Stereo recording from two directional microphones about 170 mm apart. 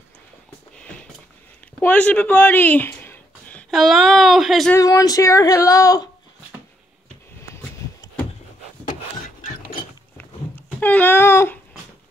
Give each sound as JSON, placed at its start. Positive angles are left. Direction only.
{"t": 1.8, "sound": "speech", "side_deg": 10}
{"t": 4.7, "sound": "female singing", "side_deg": 20}
{"t": 10.1, "sound": "a sound", "side_deg": 10}